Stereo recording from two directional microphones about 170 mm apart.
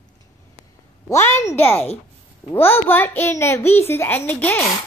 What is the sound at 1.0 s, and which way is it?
A child's voice, 15° left (ahead or behind).